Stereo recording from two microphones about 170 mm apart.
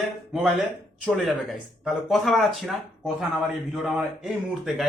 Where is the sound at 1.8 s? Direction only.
Centre (ahead or behind).